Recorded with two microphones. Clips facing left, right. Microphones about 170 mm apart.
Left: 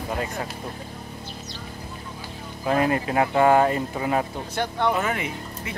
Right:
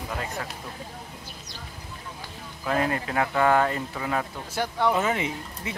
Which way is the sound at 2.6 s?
20° left (ahead or behind).